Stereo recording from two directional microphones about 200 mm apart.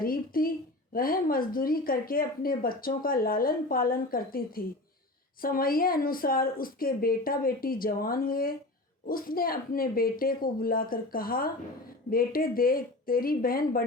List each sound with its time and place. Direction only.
0.0 s a woman's voice: 45° left (ahead or behind)